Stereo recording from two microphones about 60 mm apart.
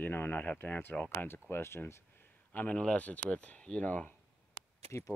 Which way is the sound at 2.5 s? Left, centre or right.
Left.